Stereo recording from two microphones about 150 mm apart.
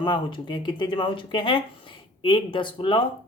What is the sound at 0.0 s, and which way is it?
Speech, 30° left (ahead or behind).